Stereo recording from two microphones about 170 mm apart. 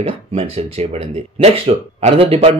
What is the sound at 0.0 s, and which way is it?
Speech, 35° right (ahead or behind).